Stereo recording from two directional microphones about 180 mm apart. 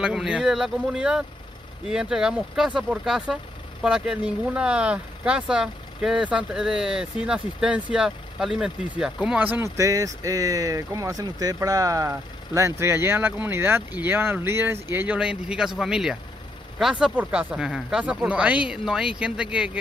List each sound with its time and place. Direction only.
0.0 s speech: 5° right (ahead or behind)